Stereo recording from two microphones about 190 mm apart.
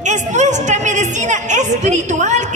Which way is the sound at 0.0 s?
40° right (ahead or behind).